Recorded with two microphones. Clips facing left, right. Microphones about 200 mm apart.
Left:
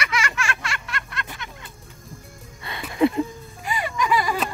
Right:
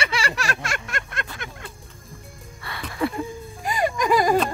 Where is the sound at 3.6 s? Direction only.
45° right (ahead or behind).